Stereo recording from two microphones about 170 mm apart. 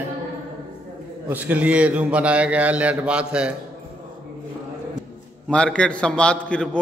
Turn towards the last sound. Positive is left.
turn(degrees=5)  # may be behind; listen again after turning